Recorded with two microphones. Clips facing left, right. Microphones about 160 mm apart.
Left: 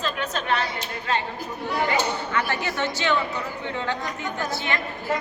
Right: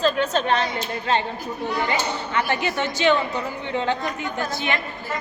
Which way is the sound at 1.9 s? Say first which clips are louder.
Even; 20° right (ahead or behind).